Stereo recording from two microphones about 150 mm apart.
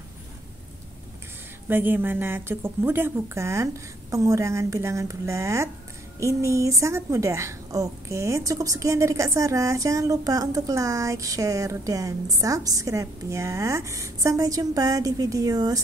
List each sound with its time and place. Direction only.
1.7 s a woman's voice: 15° right (ahead or behind)